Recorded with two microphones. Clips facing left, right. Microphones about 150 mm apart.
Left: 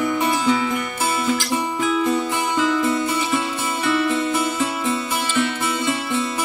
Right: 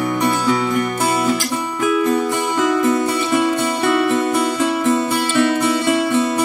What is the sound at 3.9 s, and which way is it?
Music, 40° right (ahead or behind).